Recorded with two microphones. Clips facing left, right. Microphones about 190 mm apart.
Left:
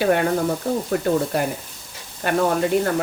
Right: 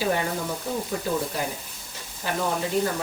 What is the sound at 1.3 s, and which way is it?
Speech, 60° left (ahead or behind).